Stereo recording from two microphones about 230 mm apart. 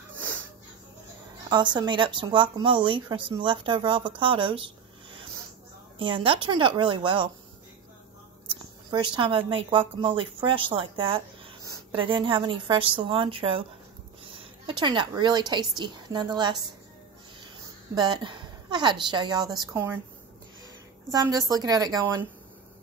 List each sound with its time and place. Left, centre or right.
1.5 s speech: centre
5.9 s speech: right
8.5 s a sound: right
9.7 s a woman's voice: right
17.9 s speech: centre
21.1 s a woman's voice: centre